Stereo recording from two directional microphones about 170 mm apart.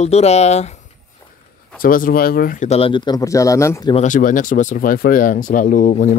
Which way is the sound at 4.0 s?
50° left (ahead or behind).